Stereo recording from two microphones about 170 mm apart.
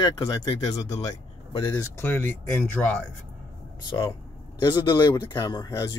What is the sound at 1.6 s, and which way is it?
Speech, 15° left (ahead or behind).